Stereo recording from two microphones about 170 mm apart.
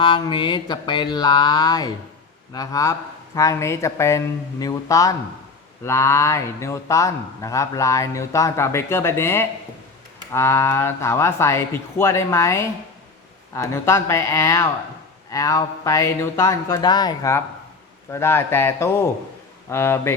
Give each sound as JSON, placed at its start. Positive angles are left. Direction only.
{"t": 0.0, "sound": "speech", "side_deg": 30}